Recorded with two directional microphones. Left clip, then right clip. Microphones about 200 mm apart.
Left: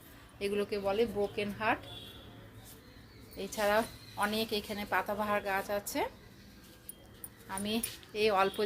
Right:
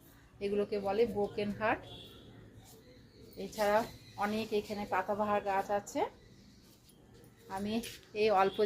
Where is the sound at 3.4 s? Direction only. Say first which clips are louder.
Left 1 dB; 45° left (ahead or behind).